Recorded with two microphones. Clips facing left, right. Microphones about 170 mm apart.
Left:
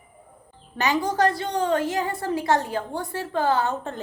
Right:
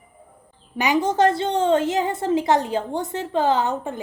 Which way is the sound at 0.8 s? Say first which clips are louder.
Right 3 dB; 15° right (ahead or behind).